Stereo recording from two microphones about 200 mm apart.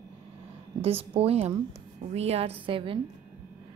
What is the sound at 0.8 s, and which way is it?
A woman's voice, 30° right (ahead or behind).